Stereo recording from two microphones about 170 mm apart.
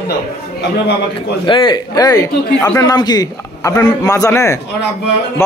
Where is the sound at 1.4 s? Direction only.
30° left (ahead or behind).